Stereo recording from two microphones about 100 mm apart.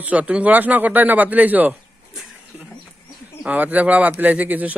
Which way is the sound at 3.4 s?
15° right (ahead or behind).